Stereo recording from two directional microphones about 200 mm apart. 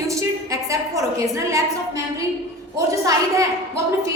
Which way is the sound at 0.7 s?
15° right (ahead or behind).